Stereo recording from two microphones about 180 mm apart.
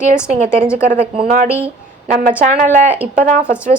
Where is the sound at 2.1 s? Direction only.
50° right (ahead or behind).